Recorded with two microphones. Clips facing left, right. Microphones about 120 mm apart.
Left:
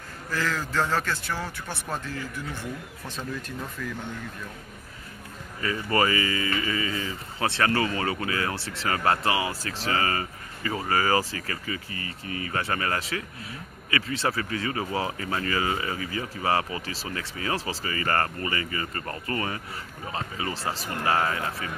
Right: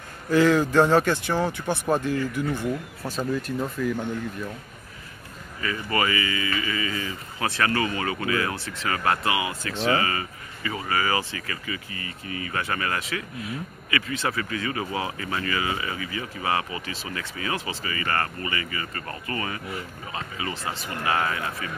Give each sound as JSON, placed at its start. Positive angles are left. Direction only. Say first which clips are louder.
{"t": 0.3, "sound": "a man's voice", "louder": "right 10 dB", "side_deg": -20}
{"t": 5.6, "sound": "speech", "louder": "left 1 dB", "side_deg": 35}